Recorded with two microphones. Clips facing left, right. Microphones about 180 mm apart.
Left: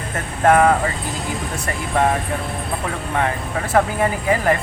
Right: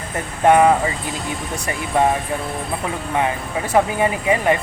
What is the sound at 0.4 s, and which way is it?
Speech, 15° right (ahead or behind).